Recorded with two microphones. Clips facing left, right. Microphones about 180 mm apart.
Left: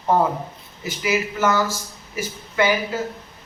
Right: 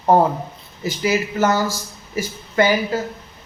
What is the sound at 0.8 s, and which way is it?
A woman's voice, 40° right (ahead or behind).